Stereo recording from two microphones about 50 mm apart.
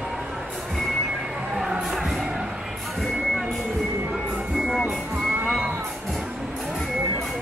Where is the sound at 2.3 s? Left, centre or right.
Right.